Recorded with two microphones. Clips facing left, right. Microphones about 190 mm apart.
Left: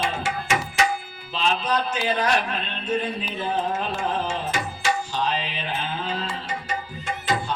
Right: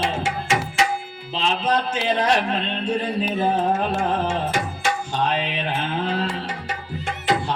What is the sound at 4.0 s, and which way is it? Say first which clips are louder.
Tabla: right 4 dB; 55° right (ahead or behind).